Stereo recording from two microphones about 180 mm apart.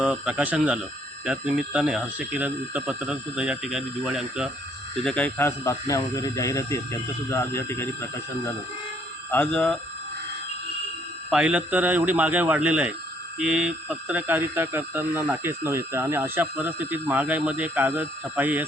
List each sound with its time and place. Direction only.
0.0 s speech: 5° right (ahead or behind)
5.0 s speech: 10° left (ahead or behind)
9.3 s speech: 5° left (ahead or behind)
11.3 s speech: 5° right (ahead or behind)